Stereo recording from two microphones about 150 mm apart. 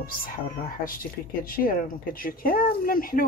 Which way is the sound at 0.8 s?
70° left (ahead or behind).